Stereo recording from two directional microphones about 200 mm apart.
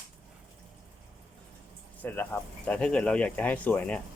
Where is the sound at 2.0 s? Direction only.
10° left (ahead or behind).